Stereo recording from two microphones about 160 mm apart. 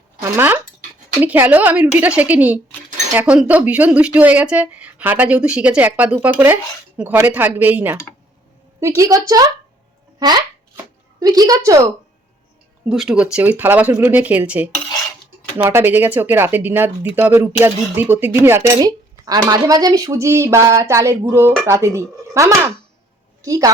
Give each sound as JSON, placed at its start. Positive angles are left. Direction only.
{"t": 0.2, "sound": "speech", "side_deg": -10}
{"t": 8.8, "sound": "a woman's voice", "side_deg": -20}
{"t": 12.9, "sound": "a woman's voice", "side_deg": -5}